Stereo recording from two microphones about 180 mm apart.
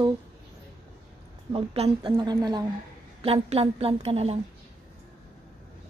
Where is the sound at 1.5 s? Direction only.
30° right (ahead or behind).